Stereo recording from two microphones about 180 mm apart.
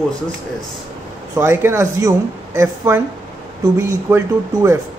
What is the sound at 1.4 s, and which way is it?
A woman's voice, 15° right (ahead or behind).